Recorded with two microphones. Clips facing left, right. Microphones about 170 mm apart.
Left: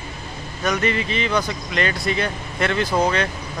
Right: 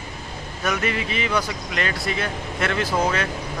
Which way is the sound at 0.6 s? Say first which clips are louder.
Left 3 dB; 5° right (ahead or behind).